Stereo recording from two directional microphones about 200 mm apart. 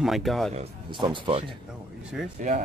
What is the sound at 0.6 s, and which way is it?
Speech, 25° right (ahead or behind).